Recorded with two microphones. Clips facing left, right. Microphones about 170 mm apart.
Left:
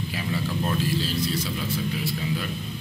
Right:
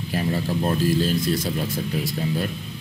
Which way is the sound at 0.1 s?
40° right (ahead or behind).